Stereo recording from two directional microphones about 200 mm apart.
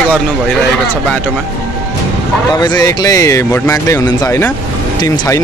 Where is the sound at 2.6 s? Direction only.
20° left (ahead or behind).